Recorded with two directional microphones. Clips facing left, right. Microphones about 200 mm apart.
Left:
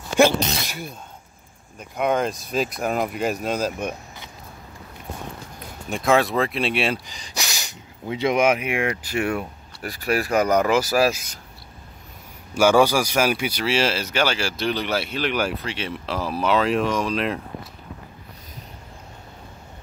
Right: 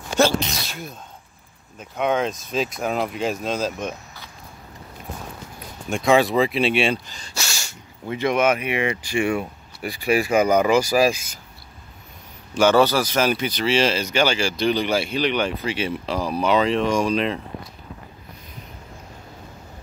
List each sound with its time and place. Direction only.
0.2 s sneeze: 15° left (ahead or behind)
2.0 s speech: 5° left (ahead or behind)
5.9 s speech: centre (ahead or behind)
7.1 s speech: 15° left (ahead or behind)
12.5 s speech: 10° left (ahead or behind)